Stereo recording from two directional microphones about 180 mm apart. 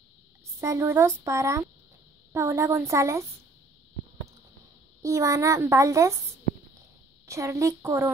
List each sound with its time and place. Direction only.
0.6 s a child's voice: 15° right (ahead or behind)
5.0 s a child's voice: 15° right (ahead or behind)
7.2 s a child's voice: 15° right (ahead or behind)